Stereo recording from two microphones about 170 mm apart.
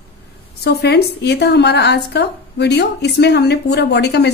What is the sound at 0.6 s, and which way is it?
A woman's voice, 80° left.